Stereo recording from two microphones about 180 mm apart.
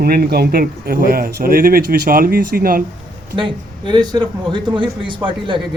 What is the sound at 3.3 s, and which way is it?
A man's voice, 25° right (ahead or behind).